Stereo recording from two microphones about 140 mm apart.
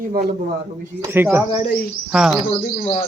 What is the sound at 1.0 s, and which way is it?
Speech, 15° right (ahead or behind).